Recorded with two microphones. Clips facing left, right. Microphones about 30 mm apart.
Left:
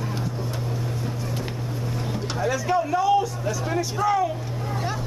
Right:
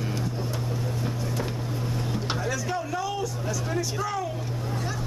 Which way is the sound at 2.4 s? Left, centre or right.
Centre.